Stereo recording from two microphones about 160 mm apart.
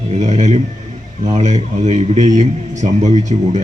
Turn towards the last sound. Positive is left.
turn(degrees=-45)  # may be behind; listen again after turning